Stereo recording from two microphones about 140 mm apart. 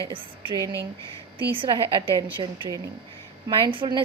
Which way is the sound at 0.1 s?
35° right (ahead or behind).